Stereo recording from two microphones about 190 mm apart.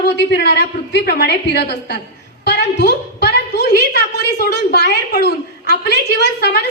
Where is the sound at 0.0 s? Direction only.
60° left (ahead or behind).